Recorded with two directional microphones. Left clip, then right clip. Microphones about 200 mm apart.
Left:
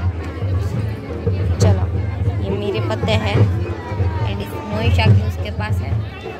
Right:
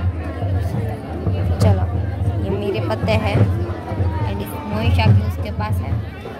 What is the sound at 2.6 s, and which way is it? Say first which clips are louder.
Speech: even; centre (ahead or behind).